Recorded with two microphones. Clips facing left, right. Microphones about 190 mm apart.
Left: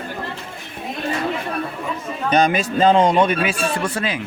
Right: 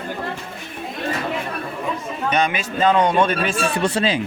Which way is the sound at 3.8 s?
25° right (ahead or behind).